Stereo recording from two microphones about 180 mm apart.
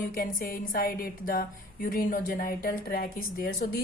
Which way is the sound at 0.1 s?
50° left (ahead or behind).